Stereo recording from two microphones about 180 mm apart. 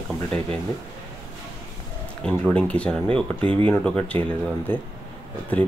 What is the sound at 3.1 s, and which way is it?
Speech, 30° right (ahead or behind).